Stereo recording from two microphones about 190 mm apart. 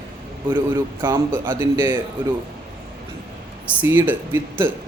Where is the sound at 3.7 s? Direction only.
10° right (ahead or behind).